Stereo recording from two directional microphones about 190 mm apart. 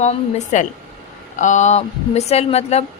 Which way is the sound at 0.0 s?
35° left (ahead or behind).